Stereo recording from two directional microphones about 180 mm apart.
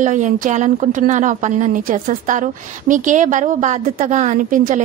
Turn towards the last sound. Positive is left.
turn(degrees=-45)  # may be behind; listen again after turning